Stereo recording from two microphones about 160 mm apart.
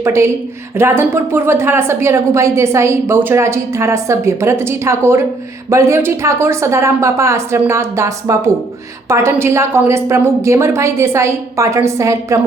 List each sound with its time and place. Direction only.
0.0 s a woman's voice: 15° right (ahead or behind)